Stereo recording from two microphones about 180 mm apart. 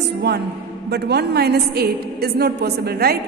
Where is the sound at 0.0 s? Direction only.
65° right (ahead or behind).